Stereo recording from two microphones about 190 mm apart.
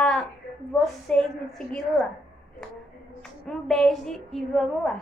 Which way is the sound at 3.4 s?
Centre (ahead or behind).